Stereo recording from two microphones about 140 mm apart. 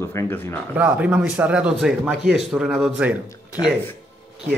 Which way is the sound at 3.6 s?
25° left (ahead or behind).